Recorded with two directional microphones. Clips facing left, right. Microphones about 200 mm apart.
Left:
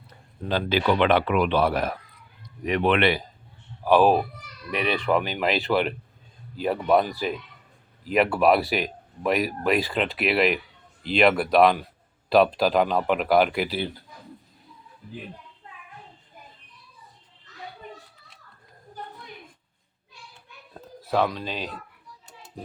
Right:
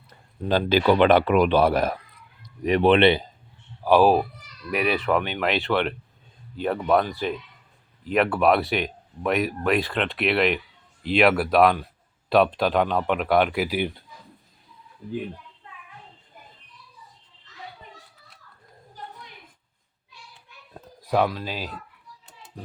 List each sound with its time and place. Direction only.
0.4 s speech: 45° right (ahead or behind)
2.6 s speech: 30° right (ahead or behind)
3.8 s speech: 10° right (ahead or behind)
15.0 s speech: 35° right (ahead or behind)
20.7 s a sound: 15° right (ahead or behind)